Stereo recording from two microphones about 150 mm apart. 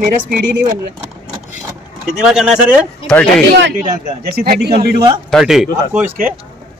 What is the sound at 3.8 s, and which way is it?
A man's voice, 85° right.